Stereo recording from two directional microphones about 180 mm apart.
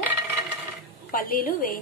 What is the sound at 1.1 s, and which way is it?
Speech, 55° left (ahead or behind).